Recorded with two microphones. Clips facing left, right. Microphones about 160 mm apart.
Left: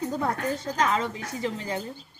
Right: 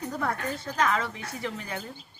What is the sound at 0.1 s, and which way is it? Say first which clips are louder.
A woman's voice: left 3 dB; 25° left (ahead or behind).